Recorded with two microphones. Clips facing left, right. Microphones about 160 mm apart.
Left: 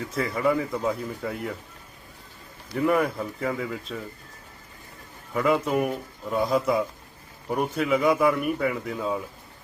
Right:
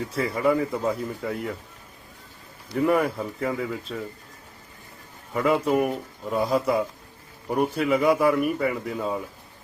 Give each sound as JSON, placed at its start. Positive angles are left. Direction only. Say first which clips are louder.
{"t": 0.3, "sound": "a man's voice", "louder": "right 2 dB", "side_deg": 0}
{"t": 2.7, "sound": "a man's voice", "louder": "right 1 dB", "side_deg": 0}
{"t": 5.3, "sound": "a man's voice", "louder": "right 1 dB", "side_deg": 0}